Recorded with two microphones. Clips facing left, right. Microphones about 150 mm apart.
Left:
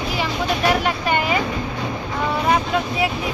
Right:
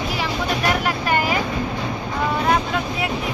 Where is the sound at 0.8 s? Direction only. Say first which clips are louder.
Even; centre (ahead or behind).